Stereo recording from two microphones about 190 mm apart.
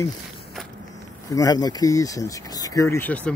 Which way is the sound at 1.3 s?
20° left (ahead or behind).